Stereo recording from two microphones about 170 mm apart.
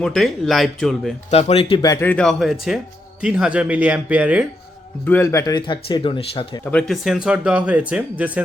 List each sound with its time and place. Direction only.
0.0 s speech: centre (ahead or behind)
1.3 s speech: 40° left (ahead or behind)
1.8 s speech: 15° left (ahead or behind); by 4.4 s 10° right (ahead or behind)
5.0 s a man's voice: 15° left (ahead or behind); by 6.6 s 35° left (ahead or behind)
6.7 s speech: 5° left (ahead or behind)